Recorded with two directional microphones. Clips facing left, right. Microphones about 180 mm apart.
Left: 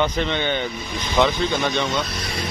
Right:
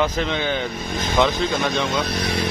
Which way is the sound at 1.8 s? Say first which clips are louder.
Right 2 dB; 60° right (ahead or behind).